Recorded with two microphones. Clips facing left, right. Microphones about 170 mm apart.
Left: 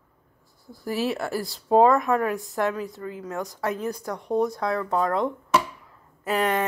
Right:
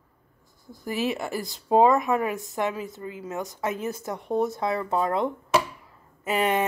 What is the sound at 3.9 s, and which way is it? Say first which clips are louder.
Speech: left 1 dB; 25° right (ahead or behind).